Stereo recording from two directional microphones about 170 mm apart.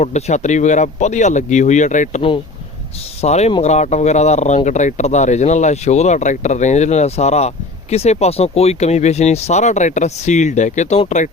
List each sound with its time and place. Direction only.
0.0 s speech: 40° left (ahead or behind)